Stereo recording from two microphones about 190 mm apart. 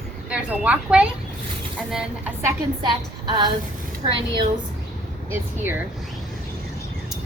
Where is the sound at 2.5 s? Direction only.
25° right (ahead or behind).